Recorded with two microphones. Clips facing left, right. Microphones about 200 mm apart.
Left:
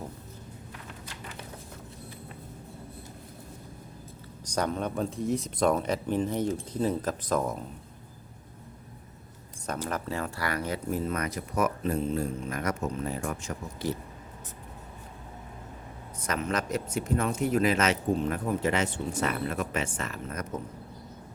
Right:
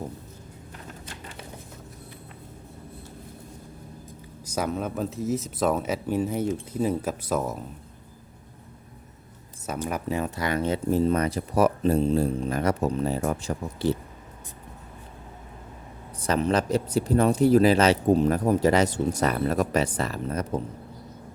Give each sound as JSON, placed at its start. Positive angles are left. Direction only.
{"t": 4.4, "sound": "speech", "side_deg": -5}
{"t": 9.9, "sound": "speech", "side_deg": -15}
{"t": 16.2, "sound": "speech", "side_deg": -30}